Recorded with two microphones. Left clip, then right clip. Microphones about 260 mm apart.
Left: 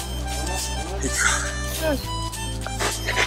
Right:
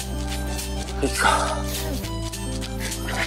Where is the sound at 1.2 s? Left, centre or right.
Centre.